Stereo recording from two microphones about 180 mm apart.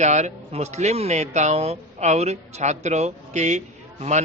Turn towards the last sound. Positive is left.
turn(degrees=-40)  # may be behind; listen again after turning